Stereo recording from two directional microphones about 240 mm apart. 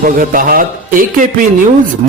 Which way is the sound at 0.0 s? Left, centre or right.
Right.